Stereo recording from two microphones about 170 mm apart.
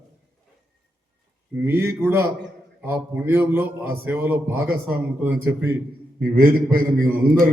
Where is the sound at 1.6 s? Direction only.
15° right (ahead or behind).